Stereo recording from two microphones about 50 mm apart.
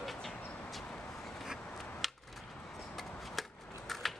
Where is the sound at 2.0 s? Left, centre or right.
Centre.